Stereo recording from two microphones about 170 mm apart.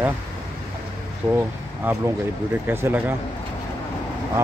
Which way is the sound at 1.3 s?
15° right (ahead or behind).